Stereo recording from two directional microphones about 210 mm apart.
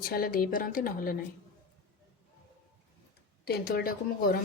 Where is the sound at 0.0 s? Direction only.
45° left (ahead or behind).